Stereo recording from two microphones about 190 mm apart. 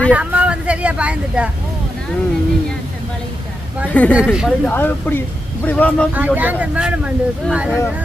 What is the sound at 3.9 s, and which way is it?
Speech, 10° left (ahead or behind).